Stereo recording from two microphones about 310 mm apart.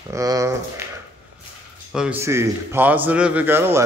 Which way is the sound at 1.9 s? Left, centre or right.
Centre.